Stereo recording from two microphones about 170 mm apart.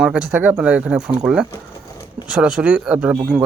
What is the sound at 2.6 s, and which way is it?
Speech, 5° right (ahead or behind).